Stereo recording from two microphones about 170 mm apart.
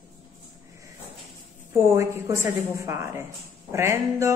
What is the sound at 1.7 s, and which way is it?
A woman's voice, 15° right (ahead or behind).